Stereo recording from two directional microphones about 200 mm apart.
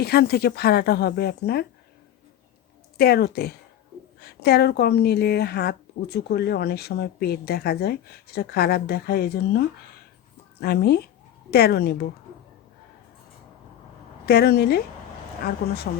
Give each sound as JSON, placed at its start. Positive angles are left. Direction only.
{"t": 0.0, "sound": "a woman's voice", "side_deg": 50}
{"t": 3.0, "sound": "a woman's voice", "side_deg": 50}
{"t": 14.3, "sound": "a woman's voice", "side_deg": 55}